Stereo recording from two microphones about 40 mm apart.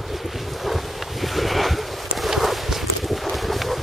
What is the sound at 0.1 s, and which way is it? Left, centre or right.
Wind, centre.